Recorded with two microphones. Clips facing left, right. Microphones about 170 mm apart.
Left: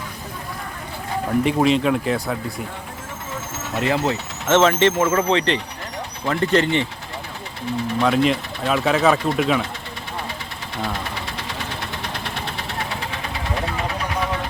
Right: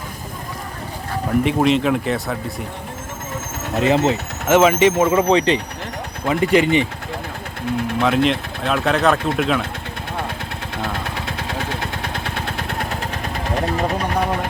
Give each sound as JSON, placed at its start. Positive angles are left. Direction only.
{"t": 1.3, "sound": "speech", "side_deg": 0}
{"t": 3.8, "sound": "speech", "side_deg": -20}
{"t": 4.4, "sound": "speech", "side_deg": -10}
{"t": 8.0, "sound": "speech", "side_deg": 0}
{"t": 12.0, "sound": "vehicle", "side_deg": -50}